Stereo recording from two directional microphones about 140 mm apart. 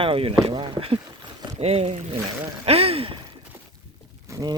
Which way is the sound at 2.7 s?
45° right (ahead or behind).